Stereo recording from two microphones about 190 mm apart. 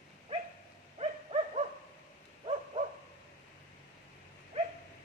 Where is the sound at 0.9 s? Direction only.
35° right (ahead or behind).